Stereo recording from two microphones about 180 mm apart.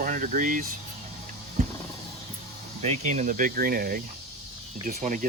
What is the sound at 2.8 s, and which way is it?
Speech, 40° right (ahead or behind).